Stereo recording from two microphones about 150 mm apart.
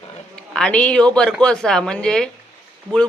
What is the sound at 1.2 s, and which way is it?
Speech, 5° left (ahead or behind).